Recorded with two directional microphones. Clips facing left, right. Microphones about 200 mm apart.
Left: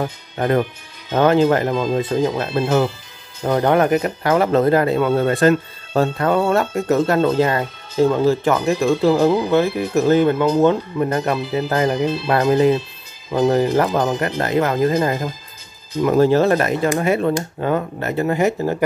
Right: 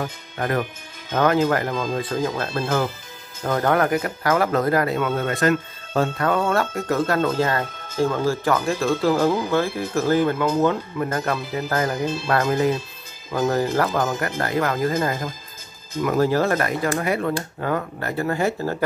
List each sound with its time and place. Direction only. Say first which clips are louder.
0.0 s speech: left 5 dB; 25° left (ahead or behind)